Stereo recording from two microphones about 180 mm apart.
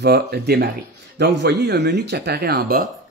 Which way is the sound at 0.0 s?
65° right (ahead or behind).